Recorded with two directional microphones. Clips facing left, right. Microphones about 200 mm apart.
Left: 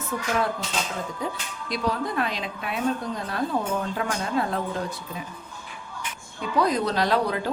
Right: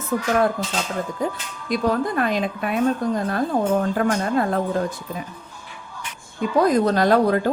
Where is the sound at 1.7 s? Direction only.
50° right (ahead or behind).